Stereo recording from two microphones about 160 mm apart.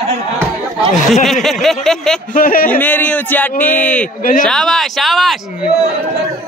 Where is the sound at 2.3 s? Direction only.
60° left (ahead or behind).